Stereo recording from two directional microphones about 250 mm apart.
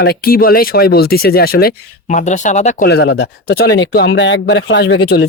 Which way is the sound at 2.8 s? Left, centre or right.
Left.